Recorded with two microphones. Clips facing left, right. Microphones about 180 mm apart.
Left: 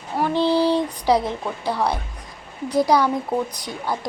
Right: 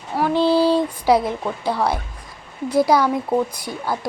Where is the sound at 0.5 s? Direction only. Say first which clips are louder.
Right 2 dB; 15° left (ahead or behind).